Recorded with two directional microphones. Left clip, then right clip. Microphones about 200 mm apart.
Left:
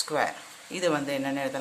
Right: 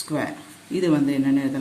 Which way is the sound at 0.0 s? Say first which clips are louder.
Even; 25° left (ahead or behind).